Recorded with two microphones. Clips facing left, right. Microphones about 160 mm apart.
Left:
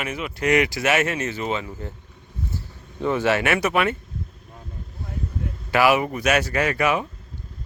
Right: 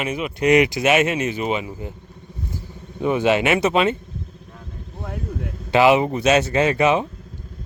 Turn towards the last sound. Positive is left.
turn(degrees=-25)  # may be behind; listen again after turning